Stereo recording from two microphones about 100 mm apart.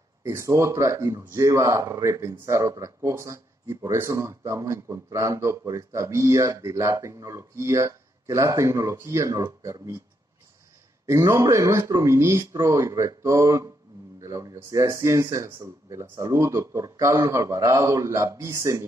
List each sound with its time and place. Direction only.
0.2 s speech: 30° right (ahead or behind)
11.1 s speech: 30° right (ahead or behind)